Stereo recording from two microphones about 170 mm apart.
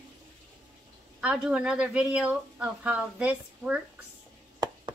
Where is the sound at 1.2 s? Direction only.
5° right (ahead or behind).